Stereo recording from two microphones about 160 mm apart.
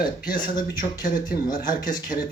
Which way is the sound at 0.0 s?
60° left (ahead or behind).